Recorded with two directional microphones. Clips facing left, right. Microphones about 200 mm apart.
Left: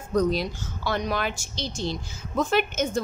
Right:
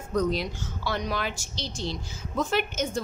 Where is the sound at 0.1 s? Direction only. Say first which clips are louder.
Left 3 dB; 35° left (ahead or behind).